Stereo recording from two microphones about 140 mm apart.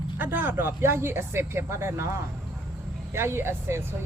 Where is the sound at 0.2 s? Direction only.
15° right (ahead or behind).